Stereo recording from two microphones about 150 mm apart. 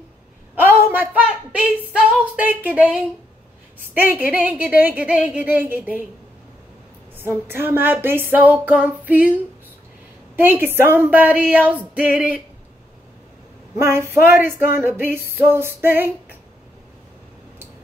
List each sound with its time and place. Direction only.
0.6 s a woman's voice: 10° right (ahead or behind)
7.2 s a woman's voice: 15° right (ahead or behind)
10.3 s a woman's voice: 15° right (ahead or behind)
13.7 s a woman's voice: 15° right (ahead or behind)